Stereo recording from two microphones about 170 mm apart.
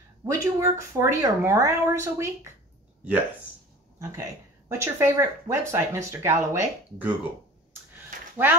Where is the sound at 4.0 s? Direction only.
20° right (ahead or behind).